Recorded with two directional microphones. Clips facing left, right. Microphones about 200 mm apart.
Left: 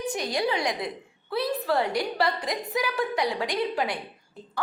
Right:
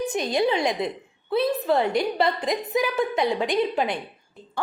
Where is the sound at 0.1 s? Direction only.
25° right (ahead or behind).